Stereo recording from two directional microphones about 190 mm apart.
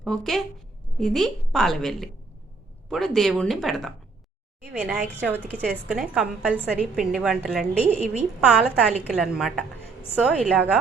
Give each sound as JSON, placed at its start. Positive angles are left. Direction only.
{"t": 0.0, "sound": "a woman's voice", "side_deg": 0}
{"t": 7.9, "sound": "a woman's voice", "side_deg": -35}
{"t": 8.4, "sound": "a woman's voice", "side_deg": -5}